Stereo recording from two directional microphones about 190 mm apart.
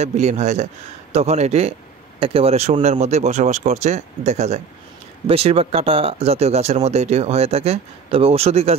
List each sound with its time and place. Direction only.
0.0 s speech: 35° right (ahead or behind)